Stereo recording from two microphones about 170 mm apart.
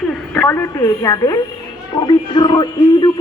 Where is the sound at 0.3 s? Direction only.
15° left (ahead or behind).